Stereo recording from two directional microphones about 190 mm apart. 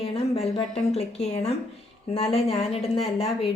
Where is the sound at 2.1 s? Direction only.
30° left (ahead or behind).